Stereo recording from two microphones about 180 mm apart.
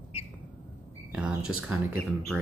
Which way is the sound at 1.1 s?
5° right (ahead or behind).